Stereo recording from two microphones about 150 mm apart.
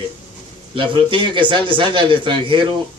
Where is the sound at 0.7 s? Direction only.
35° right (ahead or behind).